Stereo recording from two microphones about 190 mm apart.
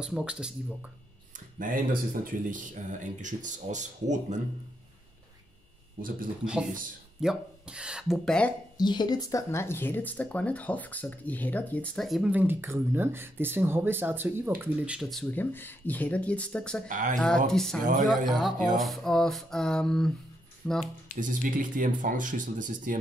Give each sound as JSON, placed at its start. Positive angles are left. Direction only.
{"t": 0.0, "sound": "speech", "side_deg": -5}
{"t": 1.6, "sound": "speech", "side_deg": -45}
{"t": 5.9, "sound": "speech", "side_deg": -50}
{"t": 6.4, "sound": "speech", "side_deg": -5}
{"t": 8.7, "sound": "speech", "side_deg": 20}
{"t": 16.8, "sound": "speech", "side_deg": -40}
{"t": 17.5, "sound": "speech", "side_deg": 0}
{"t": 21.2, "sound": "speech", "side_deg": -45}